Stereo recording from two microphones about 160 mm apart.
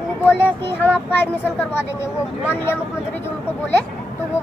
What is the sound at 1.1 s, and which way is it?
A child's voice, 15° left (ahead or behind).